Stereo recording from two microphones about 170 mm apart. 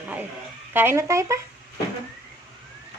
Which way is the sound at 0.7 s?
15° right (ahead or behind).